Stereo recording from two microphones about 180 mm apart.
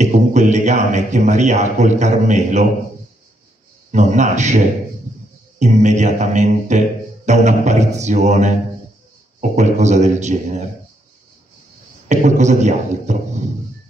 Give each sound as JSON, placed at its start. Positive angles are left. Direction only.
{"t": 0.0, "sound": "a man's voice", "side_deg": -40}
{"t": 3.9, "sound": "music", "side_deg": -40}
{"t": 12.1, "sound": "music", "side_deg": -40}